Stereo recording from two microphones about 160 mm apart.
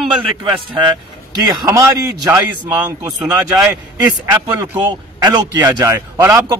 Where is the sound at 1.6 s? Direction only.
20° right (ahead or behind).